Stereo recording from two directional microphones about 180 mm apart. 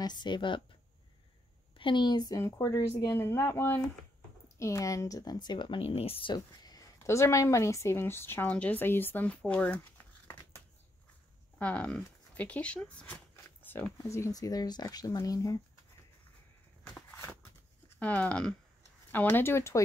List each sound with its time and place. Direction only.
0.0 s a woman's voice: 25° left (ahead or behind)
1.8 s speech: 25° left (ahead or behind); by 9.8 s 5° left (ahead or behind)
11.5 s speech: 5° left (ahead or behind)
17.2 s a sound: 10° left (ahead or behind)
19.1 s speech: 10° left (ahead or behind)